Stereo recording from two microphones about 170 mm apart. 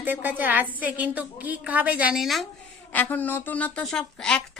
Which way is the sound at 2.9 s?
10° left (ahead or behind).